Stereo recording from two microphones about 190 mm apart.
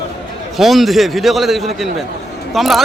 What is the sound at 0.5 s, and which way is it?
Speech, centre (ahead or behind).